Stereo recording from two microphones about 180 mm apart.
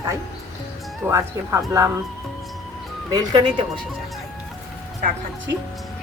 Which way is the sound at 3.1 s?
25° right (ahead or behind).